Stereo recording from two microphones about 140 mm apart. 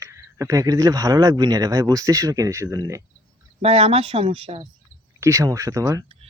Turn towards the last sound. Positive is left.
turn(degrees=-25)  # may be behind; listen again after turning